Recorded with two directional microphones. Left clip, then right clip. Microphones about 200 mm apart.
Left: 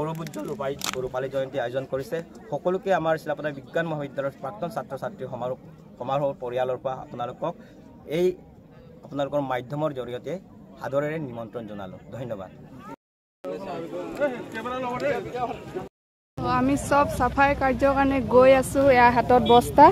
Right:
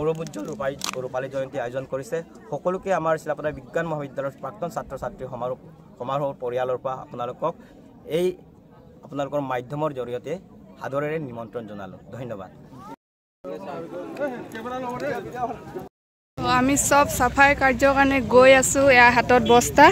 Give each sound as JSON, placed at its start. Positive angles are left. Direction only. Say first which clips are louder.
{"t": 0.3, "sound": "a man's voice", "louder": "right 1 dB", "side_deg": -5}
{"t": 14.2, "sound": "speech", "louder": "left 3 dB", "side_deg": -30}
{"t": 16.3, "sound": "speech", "louder": "right 3 dB", "side_deg": -5}